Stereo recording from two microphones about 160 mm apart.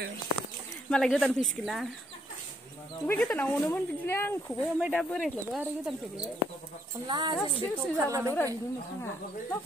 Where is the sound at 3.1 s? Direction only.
10° left (ahead or behind).